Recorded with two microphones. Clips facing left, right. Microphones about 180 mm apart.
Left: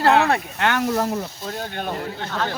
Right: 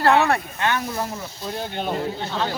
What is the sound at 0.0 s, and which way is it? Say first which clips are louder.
Speech: left 1 dB; 20° left (ahead or behind).